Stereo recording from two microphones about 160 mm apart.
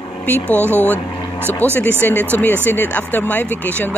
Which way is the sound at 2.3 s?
10° left (ahead or behind).